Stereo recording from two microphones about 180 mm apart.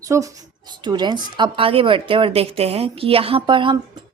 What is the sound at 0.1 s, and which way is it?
A woman's voice, 15° right (ahead or behind).